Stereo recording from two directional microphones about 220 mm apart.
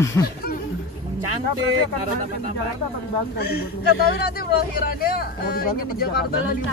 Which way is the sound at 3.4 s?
45° left (ahead or behind).